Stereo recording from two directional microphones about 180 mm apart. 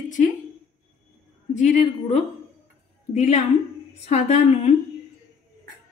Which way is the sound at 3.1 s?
40° left (ahead or behind).